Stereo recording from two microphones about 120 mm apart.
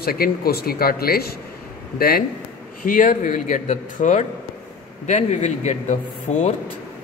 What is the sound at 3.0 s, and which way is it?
A man's voice, 90° left.